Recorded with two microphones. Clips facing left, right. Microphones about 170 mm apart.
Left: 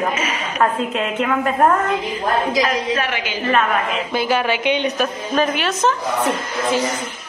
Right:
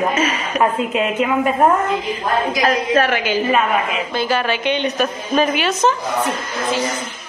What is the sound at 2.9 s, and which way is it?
Speech, 45° right (ahead or behind).